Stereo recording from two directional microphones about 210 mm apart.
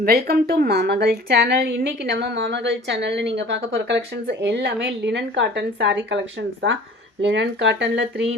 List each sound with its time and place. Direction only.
0.0 s a woman's voice: 50° right (ahead or behind)